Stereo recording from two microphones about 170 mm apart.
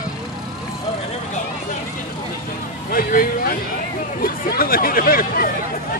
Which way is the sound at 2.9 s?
60° left (ahead or behind).